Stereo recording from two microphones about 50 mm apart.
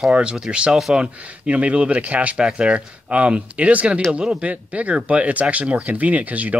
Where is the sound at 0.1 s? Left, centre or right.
Right.